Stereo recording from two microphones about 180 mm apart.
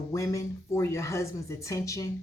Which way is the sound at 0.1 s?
15° left (ahead or behind).